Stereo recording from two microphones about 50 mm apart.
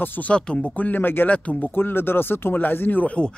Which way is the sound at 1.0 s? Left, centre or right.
Left.